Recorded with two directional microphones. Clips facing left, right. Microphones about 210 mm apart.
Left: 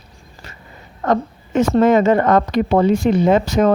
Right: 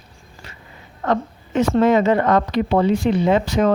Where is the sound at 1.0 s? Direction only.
45° left (ahead or behind).